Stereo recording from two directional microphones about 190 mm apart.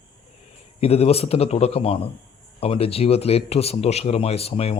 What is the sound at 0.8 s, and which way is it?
Speech, 30° left (ahead or behind).